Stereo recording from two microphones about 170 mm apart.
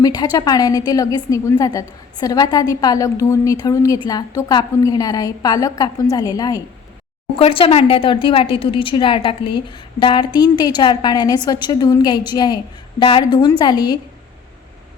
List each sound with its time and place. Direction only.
0.0 s speech: 20° left (ahead or behind)
7.3 s speech: 30° left (ahead or behind)